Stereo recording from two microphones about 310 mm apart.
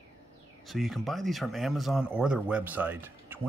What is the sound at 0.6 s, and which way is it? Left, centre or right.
Speech, centre.